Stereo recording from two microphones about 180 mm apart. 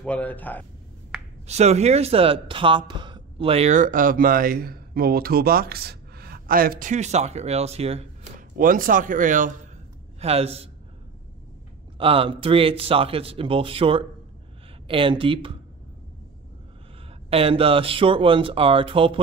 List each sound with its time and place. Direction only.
0.0 s speech: 10° left (ahead or behind)
1.5 s speech: 35° right (ahead or behind)
8.4 s speech: 50° right (ahead or behind)
10.2 s speech: 35° right (ahead or behind)
12.0 s speech: 30° right (ahead or behind)
17.3 s speech: 30° right (ahead or behind)